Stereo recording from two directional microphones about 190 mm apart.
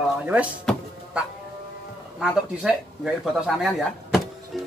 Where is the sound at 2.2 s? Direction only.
5° right (ahead or behind).